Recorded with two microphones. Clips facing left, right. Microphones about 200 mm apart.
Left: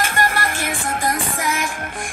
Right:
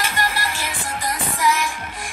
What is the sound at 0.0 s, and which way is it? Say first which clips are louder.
Music: left 4 dB; 50° left (ahead or behind).